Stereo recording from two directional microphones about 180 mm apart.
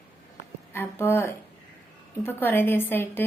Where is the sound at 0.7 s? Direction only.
10° left (ahead or behind).